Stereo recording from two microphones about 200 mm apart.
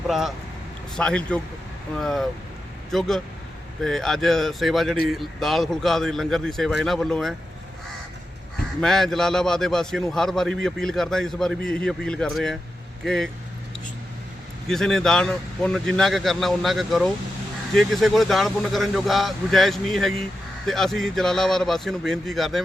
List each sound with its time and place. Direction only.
0.1 s a man's voice: centre (ahead or behind)
8.8 s a man's voice: centre (ahead or behind)
14.7 s a man's voice: centre (ahead or behind)